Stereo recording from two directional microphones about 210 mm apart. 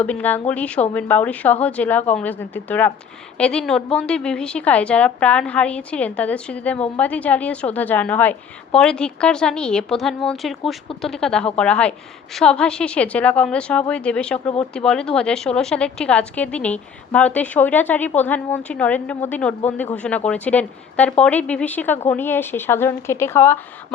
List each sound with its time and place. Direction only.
0.0 s a woman's voice: 10° left (ahead or behind)